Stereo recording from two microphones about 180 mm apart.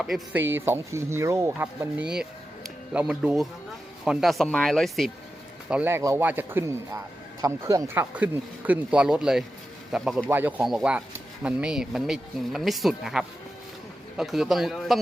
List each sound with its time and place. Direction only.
0.0 s speech: 5° right (ahead or behind)
5.6 s speech: 10° right (ahead or behind)
8.1 s speech: 10° right (ahead or behind)
10.6 s speech: centre (ahead or behind)